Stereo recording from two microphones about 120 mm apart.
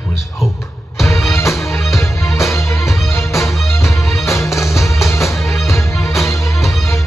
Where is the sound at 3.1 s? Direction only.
25° left (ahead or behind).